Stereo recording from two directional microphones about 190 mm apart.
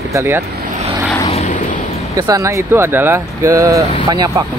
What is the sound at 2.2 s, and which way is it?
Speech, 15° right (ahead or behind).